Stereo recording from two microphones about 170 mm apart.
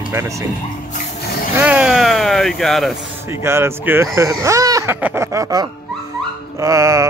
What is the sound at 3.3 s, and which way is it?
Speech, 15° right (ahead or behind).